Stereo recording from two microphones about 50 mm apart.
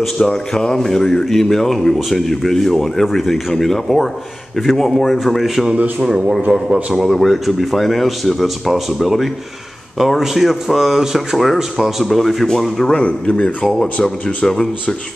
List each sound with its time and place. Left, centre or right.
0.3 s speech: centre
5.9 s a man's voice: centre
6.9 s speech: centre
12.9 s a man's voice: left